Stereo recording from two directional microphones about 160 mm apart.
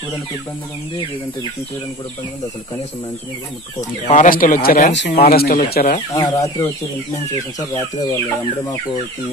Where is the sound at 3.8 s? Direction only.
50° left (ahead or behind).